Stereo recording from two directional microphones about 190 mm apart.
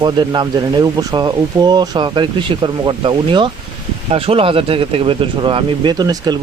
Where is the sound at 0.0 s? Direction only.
20° right (ahead or behind).